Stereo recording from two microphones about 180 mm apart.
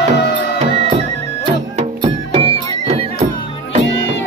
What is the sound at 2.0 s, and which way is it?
Music, 25° right (ahead or behind).